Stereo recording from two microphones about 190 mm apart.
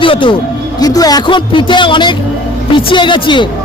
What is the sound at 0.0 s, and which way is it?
A man's voice, 25° left (ahead or behind).